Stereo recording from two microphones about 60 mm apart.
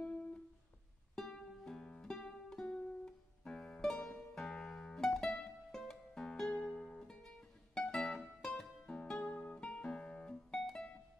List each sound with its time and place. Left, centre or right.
0.0 s music: left
1.1 s music: centre